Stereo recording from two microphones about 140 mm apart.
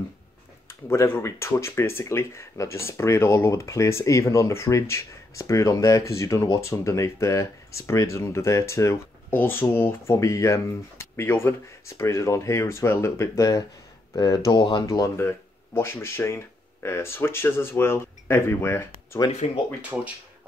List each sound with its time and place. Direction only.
0.7 s speech: 20° left (ahead or behind)
19.9 s speech: 5° right (ahead or behind)